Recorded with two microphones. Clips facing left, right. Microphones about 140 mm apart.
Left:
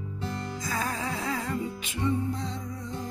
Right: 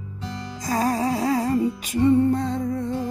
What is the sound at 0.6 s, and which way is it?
Music, 40° right (ahead or behind).